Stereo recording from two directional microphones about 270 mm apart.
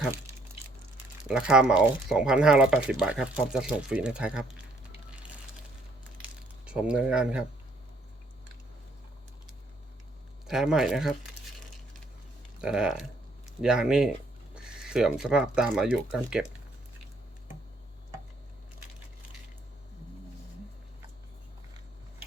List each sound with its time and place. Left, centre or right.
1.2 s speech: centre
6.7 s speech: centre
10.4 s speech: centre
12.6 s speech: centre